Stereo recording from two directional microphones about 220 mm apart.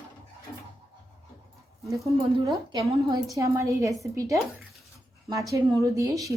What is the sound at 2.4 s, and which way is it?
A woman's voice, 15° right (ahead or behind).